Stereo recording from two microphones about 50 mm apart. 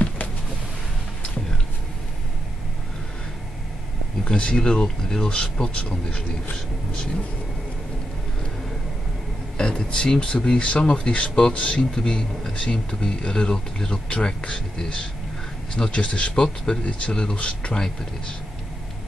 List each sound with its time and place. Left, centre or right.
4.2 s speech: centre
9.6 s speech: centre